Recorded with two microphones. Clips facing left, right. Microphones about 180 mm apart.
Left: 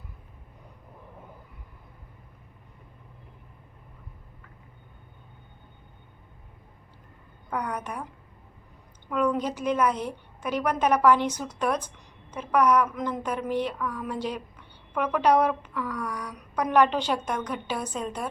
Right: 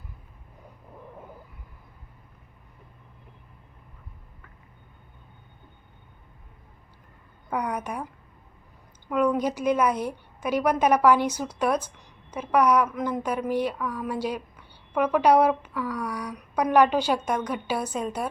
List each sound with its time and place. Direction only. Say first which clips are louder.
7.5 s speech: right 2 dB; 10° right (ahead or behind)
9.0 s speech: right 2 dB; 10° right (ahead or behind)